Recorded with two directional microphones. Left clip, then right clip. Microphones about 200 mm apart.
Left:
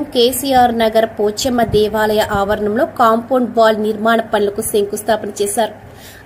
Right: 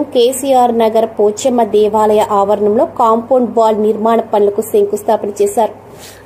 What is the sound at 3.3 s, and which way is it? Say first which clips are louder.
Speech: right 2 dB; 15° right (ahead or behind).